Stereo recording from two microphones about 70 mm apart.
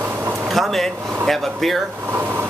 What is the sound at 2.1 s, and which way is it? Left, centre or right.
Vehicle, right.